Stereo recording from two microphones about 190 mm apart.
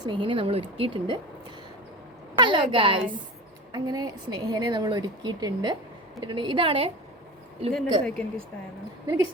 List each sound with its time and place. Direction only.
0.0 s a woman's voice: 25° right (ahead or behind)
2.4 s a woman's voice: 25° right (ahead or behind)
7.7 s speech: 5° left (ahead or behind)